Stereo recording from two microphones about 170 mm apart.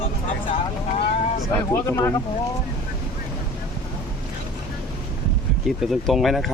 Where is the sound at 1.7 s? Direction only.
15° left (ahead or behind).